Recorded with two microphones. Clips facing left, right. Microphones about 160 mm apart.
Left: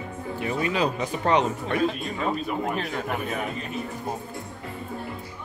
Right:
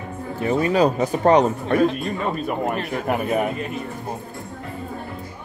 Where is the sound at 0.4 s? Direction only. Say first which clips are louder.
Right 7 dB; 40° right (ahead or behind).